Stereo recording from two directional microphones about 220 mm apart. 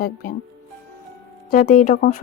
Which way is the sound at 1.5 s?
35° left (ahead or behind).